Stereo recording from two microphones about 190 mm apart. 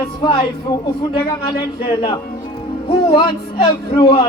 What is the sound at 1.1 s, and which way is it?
Speech, 50° left (ahead or behind).